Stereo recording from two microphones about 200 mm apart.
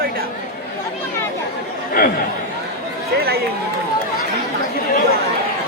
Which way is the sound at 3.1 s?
55° right (ahead or behind).